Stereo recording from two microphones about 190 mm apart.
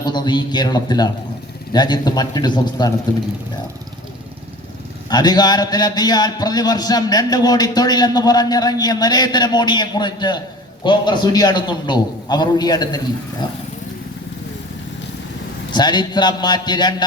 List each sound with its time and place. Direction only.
0.0 s a man's voice: 25° left (ahead or behind)
5.0 s a man's voice: 20° left (ahead or behind)
15.7 s a man's voice: 20° left (ahead or behind)